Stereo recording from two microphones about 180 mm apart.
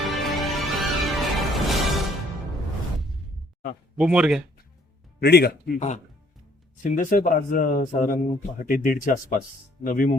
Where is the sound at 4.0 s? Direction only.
5° right (ahead or behind).